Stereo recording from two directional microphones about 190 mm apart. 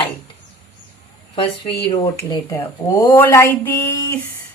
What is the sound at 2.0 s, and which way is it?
A woman's voice, 15° left (ahead or behind).